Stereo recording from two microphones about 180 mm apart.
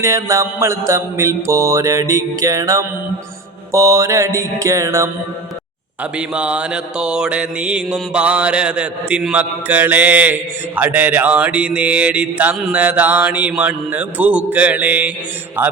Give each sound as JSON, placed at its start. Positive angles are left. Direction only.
{"t": 0.0, "sound": "mantra", "side_deg": -15}
{"t": 6.0, "sound": "mantra", "side_deg": -5}